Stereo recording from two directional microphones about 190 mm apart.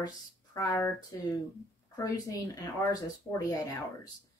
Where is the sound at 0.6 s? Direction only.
15° left (ahead or behind).